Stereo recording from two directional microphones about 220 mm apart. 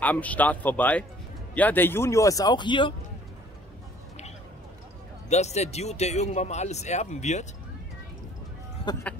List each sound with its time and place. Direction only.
0.0 s speech: 5° left (ahead or behind)
5.3 s speech: 30° left (ahead or behind)
8.9 s speech: 20° left (ahead or behind)